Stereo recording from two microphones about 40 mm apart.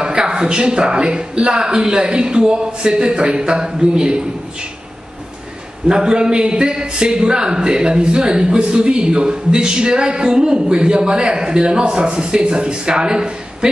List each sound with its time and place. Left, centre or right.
0.0 s a man's voice: right
5.9 s a man's voice: centre